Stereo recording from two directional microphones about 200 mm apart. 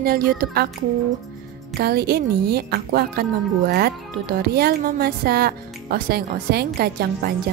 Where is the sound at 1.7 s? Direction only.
50° right (ahead or behind).